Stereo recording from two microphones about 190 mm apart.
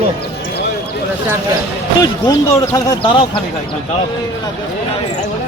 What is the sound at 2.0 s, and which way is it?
Speech, 20° left (ahead or behind).